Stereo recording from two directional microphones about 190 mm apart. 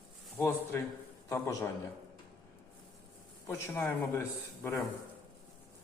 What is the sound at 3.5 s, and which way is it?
A man's voice, 10° left (ahead or behind).